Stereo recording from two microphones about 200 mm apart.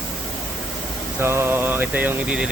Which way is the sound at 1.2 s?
10° right (ahead or behind).